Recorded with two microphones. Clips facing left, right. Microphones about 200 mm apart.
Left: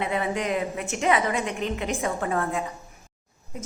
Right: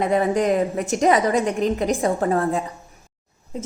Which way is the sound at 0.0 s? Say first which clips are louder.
Right 8 dB; 45° right (ahead or behind).